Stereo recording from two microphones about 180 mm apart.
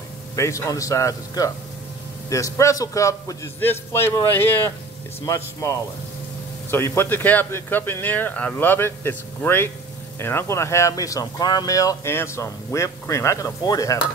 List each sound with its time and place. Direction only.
0.4 s speech: 15° left (ahead or behind)